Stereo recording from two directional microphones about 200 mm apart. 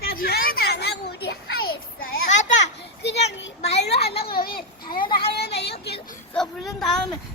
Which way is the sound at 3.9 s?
30° left (ahead or behind).